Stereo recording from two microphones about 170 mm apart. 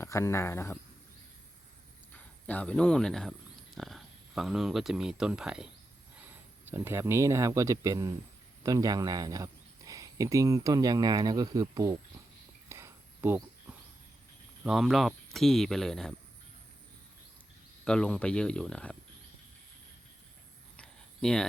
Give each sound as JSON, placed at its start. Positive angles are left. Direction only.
{"t": 0.0, "sound": "speech", "side_deg": 15}
{"t": 2.1, "sound": "speech", "side_deg": 10}
{"t": 6.7, "sound": "speech", "side_deg": -15}
{"t": 12.6, "sound": "a sound", "side_deg": -15}
{"t": 14.6, "sound": "speech", "side_deg": -5}
{"t": 17.8, "sound": "speech", "side_deg": 5}
{"t": 20.7, "sound": "a sound", "side_deg": 5}